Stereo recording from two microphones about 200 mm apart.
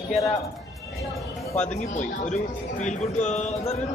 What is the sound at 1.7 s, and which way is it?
Speech, 35° left (ahead or behind).